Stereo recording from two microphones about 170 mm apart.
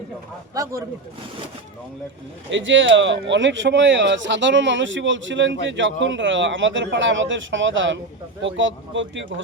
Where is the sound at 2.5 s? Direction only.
90° right.